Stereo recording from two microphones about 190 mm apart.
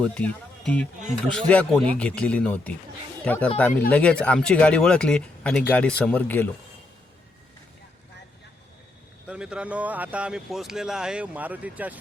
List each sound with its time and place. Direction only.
0.0 s speech: 5° left (ahead or behind)
9.2 s speech: 5° right (ahead or behind)